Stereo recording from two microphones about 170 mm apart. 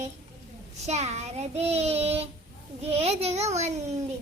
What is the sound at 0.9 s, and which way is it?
Child singing, 40° right (ahead or behind).